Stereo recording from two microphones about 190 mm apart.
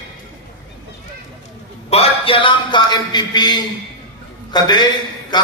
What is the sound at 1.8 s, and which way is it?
A man's voice, 30° left (ahead or behind).